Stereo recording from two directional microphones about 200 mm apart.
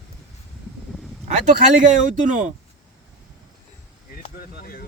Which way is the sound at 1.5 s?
40° right (ahead or behind).